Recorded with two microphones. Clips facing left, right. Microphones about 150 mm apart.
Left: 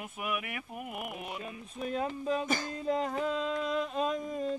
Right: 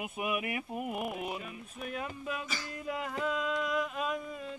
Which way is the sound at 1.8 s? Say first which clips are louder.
Left 6 dB; 30° left (ahead or behind).